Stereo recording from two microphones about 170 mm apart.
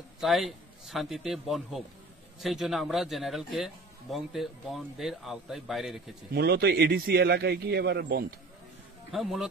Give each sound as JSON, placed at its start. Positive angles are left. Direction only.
{"t": 0.2, "sound": "a man's voice", "side_deg": 0}
{"t": 6.3, "sound": "a man's voice", "side_deg": -70}
{"t": 9.1, "sound": "a man's voice", "side_deg": 0}